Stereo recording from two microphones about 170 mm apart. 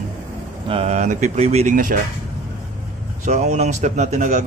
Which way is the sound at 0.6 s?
35° right (ahead or behind).